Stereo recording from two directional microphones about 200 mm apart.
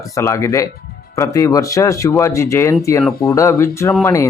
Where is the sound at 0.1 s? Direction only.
15° left (ahead or behind).